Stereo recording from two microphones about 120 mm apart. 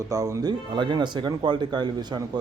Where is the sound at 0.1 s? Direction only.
25° right (ahead or behind).